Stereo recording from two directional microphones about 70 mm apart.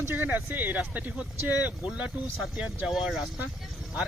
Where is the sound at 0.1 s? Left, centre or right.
Right.